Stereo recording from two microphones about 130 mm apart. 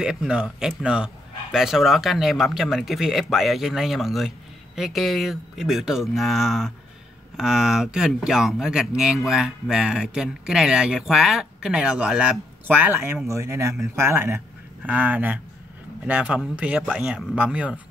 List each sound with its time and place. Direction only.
0.0 s a man's voice: 5° right (ahead or behind)